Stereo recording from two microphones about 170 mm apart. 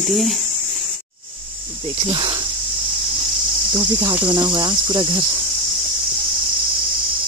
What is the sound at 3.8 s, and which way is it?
Speech, 25° right (ahead or behind).